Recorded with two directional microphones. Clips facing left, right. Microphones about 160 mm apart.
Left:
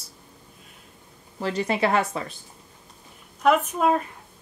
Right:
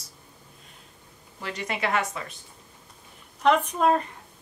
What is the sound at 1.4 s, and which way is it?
Speech, 35° left (ahead or behind).